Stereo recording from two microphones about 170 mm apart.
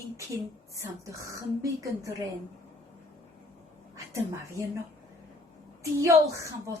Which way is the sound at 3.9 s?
15° right (ahead or behind).